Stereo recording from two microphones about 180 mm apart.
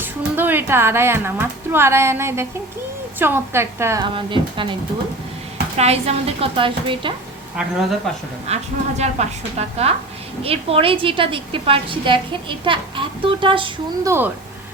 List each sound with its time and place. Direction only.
0.0 s a woman's voice: 10° right (ahead or behind)
4.0 s a woman's voice: 30° right (ahead or behind)
7.5 s speech: centre (ahead or behind)
8.5 s a woman's voice: 35° right (ahead or behind)